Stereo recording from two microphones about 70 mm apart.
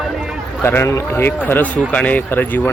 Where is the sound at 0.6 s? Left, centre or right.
Left.